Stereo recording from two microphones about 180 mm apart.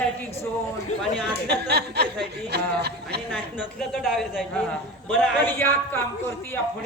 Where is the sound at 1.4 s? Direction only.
65° right (ahead or behind).